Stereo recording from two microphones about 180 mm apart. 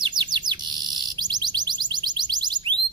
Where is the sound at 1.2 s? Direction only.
25° right (ahead or behind).